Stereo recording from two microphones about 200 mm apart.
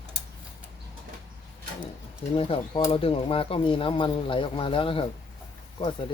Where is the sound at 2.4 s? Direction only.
25° left (ahead or behind).